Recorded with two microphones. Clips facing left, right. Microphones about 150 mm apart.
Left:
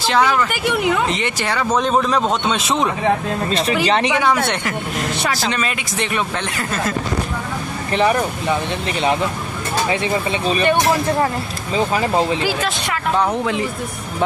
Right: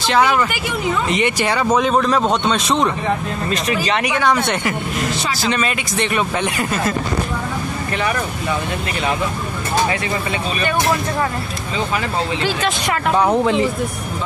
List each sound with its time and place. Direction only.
0.2 s speech: 15° right (ahead or behind)
0.5 s speech: 65° left (ahead or behind)
1.1 s speech: 15° right (ahead or behind)
1.8 s a man's voice: centre (ahead or behind)
3.4 s speech: 30° left (ahead or behind)
4.2 s a man's voice: 5° left (ahead or behind)
7.9 s speech: 30° left (ahead or behind)
10.6 s speech: 30° left (ahead or behind)
13.3 s speech: 30° right (ahead or behind)